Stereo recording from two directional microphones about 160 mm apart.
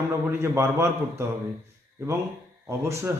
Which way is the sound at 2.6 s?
15° right (ahead or behind).